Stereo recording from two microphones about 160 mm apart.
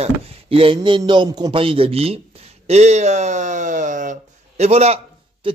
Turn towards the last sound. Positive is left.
turn(degrees=-30)  # may be behind; listen again after turning